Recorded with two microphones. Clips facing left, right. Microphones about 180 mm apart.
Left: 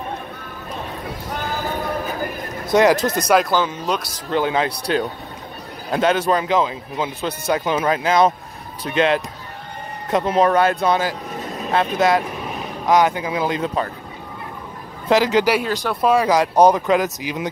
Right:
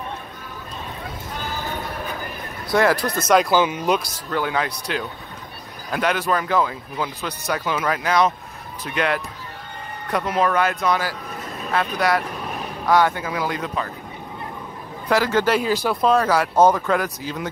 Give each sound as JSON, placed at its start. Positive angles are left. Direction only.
{"t": 2.7, "sound": "speech", "side_deg": 20}
{"t": 3.3, "sound": "speech", "side_deg": 0}
{"t": 3.5, "sound": "speech", "side_deg": -10}
{"t": 4.3, "sound": "speech", "side_deg": 25}
{"t": 5.9, "sound": "speech", "side_deg": 25}
{"t": 15.0, "sound": "speech", "side_deg": 20}
{"t": 15.6, "sound": "speech", "side_deg": -5}
{"t": 16.0, "sound": "speech", "side_deg": 10}